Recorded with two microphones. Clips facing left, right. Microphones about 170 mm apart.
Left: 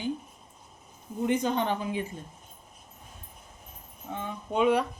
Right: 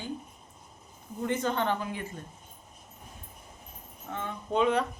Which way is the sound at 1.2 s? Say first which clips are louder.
Left 3 dB; 15° left (ahead or behind).